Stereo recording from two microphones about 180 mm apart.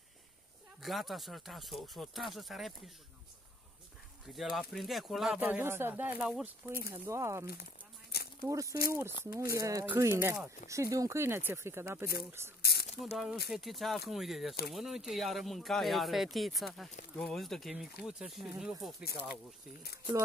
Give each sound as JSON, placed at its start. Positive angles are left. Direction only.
{"t": 0.8, "sound": "speech", "side_deg": 0}
{"t": 4.3, "sound": "speech", "side_deg": 0}
{"t": 8.1, "sound": "a sound", "side_deg": 60}
{"t": 8.5, "sound": "speech", "side_deg": -20}
{"t": 12.6, "sound": "a sound", "side_deg": 65}
{"t": 13.0, "sound": "speech", "side_deg": 0}